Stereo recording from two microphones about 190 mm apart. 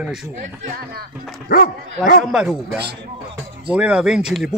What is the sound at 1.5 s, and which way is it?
Speech, 50° left (ahead or behind).